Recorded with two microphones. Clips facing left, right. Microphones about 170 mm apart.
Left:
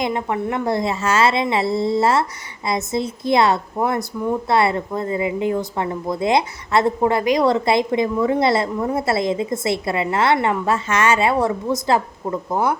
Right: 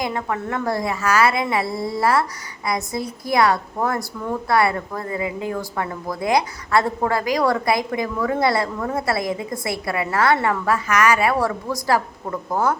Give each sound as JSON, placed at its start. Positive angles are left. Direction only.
{"t": 0.0, "sound": "a woman's voice", "side_deg": 20}